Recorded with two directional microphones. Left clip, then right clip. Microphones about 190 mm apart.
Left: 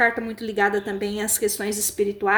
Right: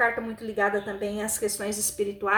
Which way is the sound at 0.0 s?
45° left (ahead or behind).